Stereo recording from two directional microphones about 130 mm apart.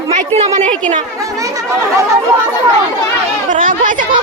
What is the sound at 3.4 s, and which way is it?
Speech, 85° right.